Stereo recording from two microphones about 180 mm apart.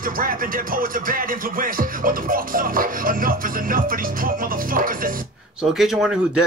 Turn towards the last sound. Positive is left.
turn(degrees=0)  # may be behind; listen again after turning